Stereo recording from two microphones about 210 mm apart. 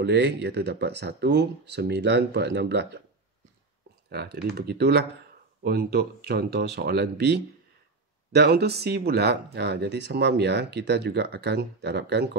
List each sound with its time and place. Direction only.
0.0 s speech: 55° right (ahead or behind)
4.1 s speech: 50° right (ahead or behind)